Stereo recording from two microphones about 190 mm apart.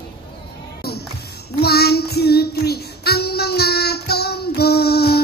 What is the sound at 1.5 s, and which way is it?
Child singing, 55° left (ahead or behind).